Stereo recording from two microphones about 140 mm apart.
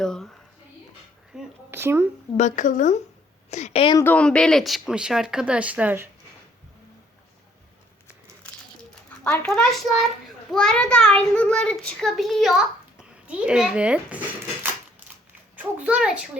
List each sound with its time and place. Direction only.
0.0 s a sound: 5° left (ahead or behind)
1.3 s a sound: centre (ahead or behind)
1.7 s speech: 15° right (ahead or behind)
2.4 s speech: 65° left (ahead or behind)
3.5 s a woman's voice: 50° left (ahead or behind)
3.9 s a child's voice: 15° left (ahead or behind); by 6.1 s 10° right (ahead or behind)
9.2 s a child's voice: 10° left (ahead or behind); by 14.2 s 5° right (ahead or behind)
15.5 s a child's voice: 10° right (ahead or behind)